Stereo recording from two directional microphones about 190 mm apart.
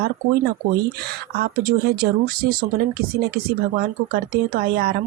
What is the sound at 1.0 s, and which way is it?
Speech, 50° right (ahead or behind).